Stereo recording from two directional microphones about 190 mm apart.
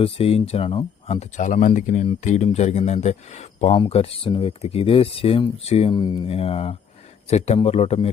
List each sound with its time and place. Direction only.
0.0 s speech: 30° left (ahead or behind)